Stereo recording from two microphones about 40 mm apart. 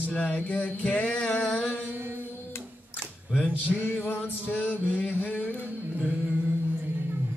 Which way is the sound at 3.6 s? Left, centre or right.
Left.